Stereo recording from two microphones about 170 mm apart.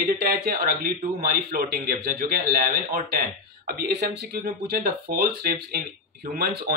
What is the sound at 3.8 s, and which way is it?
Speech, 70° right (ahead or behind).